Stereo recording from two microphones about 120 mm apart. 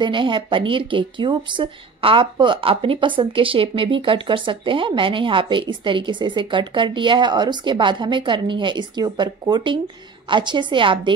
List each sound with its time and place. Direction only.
0.0 s a woman's voice: 40° right (ahead or behind)